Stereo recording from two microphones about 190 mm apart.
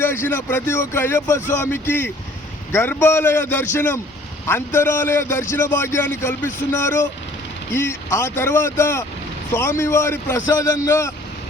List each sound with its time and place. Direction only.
0.0 s speech: 10° left (ahead or behind)